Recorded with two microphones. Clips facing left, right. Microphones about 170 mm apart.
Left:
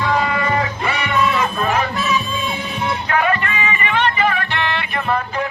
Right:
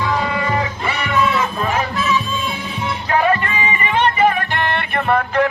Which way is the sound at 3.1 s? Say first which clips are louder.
Right 4 dB; 30° right (ahead or behind).